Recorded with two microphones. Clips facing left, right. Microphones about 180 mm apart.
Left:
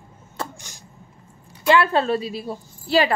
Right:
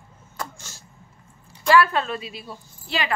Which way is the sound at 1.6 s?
25° left (ahead or behind).